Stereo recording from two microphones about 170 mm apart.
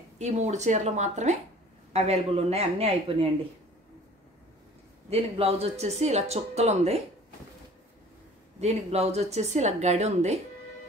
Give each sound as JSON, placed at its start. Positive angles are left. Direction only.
{"t": 0.2, "sound": "speech", "side_deg": -45}
{"t": 5.1, "sound": "speech", "side_deg": -35}
{"t": 8.5, "sound": "speech", "side_deg": -40}